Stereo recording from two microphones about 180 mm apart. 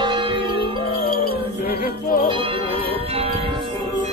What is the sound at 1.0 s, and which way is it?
Music, 55° left (ahead or behind).